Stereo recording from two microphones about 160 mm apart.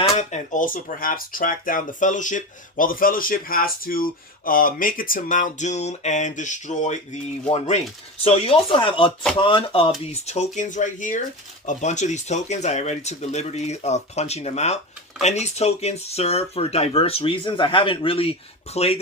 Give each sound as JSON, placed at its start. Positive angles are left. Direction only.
{"t": 0.2, "sound": "speech", "side_deg": 45}
{"t": 10.1, "sound": "speech", "side_deg": 45}